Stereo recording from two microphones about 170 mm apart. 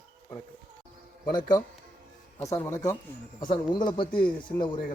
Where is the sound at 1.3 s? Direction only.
25° left (ahead or behind).